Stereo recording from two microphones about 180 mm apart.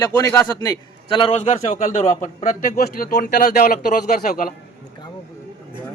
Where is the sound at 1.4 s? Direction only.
40° left (ahead or behind).